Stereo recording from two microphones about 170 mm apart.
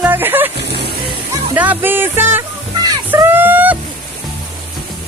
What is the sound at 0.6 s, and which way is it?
Vehicle, 75° right (ahead or behind).